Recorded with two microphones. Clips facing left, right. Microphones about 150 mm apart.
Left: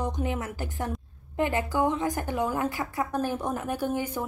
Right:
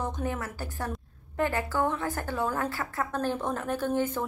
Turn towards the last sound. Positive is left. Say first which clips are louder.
# right 1 dB
turn(degrees=10)  # may be behind; listen again after turning